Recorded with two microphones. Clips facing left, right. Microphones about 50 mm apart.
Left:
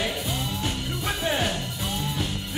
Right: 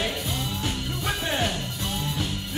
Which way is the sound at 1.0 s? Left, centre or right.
Centre.